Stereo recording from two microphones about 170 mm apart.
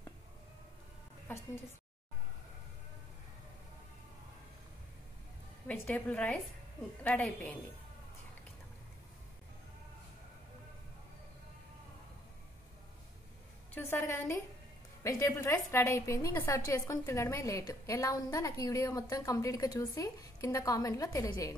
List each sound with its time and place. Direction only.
1.2 s a woman's voice: 15° left (ahead or behind)
5.7 s a woman's voice: 10° left (ahead or behind)
13.7 s a woman's voice: 15° left (ahead or behind)